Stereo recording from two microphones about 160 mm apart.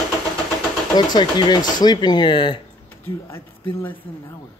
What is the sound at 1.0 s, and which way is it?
A man's voice, 25° left (ahead or behind).